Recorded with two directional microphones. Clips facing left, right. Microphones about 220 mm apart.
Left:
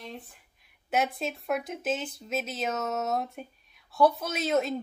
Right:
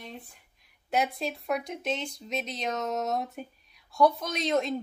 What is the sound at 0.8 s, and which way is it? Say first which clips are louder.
A woman's voice: even; centre (ahead or behind).